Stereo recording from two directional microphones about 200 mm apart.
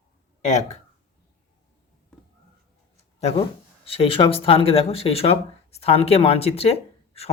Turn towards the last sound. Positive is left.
turn(degrees=30)  # may be behind; listen again after turning